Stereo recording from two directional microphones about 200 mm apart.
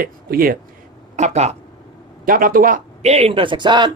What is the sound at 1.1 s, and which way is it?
Speech, 35° right (ahead or behind).